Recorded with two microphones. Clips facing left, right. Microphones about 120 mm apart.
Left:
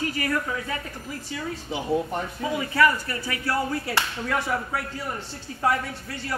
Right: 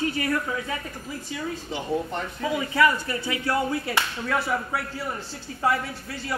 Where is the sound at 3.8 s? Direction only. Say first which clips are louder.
Even; 10° right (ahead or behind).